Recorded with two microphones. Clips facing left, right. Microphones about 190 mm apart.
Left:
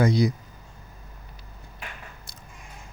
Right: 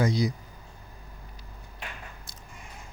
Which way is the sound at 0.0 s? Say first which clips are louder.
Left 4 dB; 60° left (ahead or behind).